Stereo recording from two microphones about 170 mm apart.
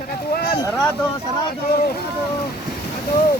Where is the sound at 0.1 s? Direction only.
65° left (ahead or behind).